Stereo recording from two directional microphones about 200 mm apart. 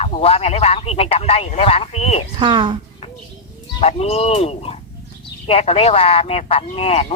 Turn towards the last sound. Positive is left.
turn(degrees=30)  # may be behind; listen again after turning